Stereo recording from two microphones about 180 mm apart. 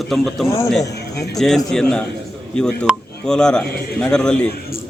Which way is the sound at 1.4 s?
Centre (ahead or behind).